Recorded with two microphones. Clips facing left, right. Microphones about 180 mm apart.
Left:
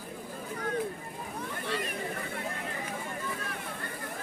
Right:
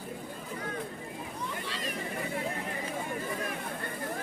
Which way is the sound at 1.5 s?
60° left (ahead or behind).